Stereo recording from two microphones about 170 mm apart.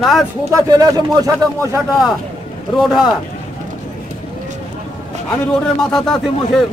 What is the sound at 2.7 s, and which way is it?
Speech, centre (ahead or behind).